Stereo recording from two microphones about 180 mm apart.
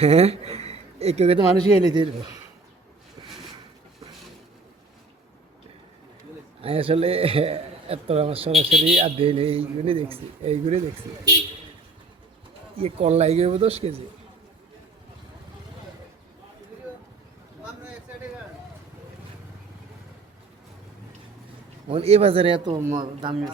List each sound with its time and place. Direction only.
0.0 s speech: 35° right (ahead or behind)
1.8 s speech: 25° right (ahead or behind)
3.2 s a sound: 25° right (ahead or behind)
6.6 s a man's voice: 30° right (ahead or behind)
12.7 s a man's voice: 35° right (ahead or behind)
21.8 s speech: 35° right (ahead or behind)